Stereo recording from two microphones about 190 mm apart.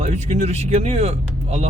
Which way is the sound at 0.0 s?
35° right (ahead or behind).